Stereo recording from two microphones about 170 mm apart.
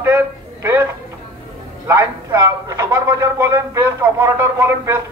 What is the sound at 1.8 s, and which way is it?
A man's voice, 15° right (ahead or behind).